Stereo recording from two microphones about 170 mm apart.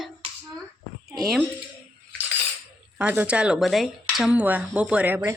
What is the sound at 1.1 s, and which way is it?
Speech, centre (ahead or behind).